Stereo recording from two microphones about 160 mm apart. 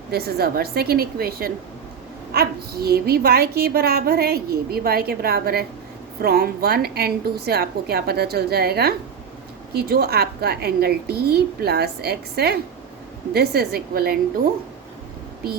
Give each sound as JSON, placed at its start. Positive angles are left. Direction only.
{"t": 0.1, "sound": "a woman's voice", "side_deg": -80}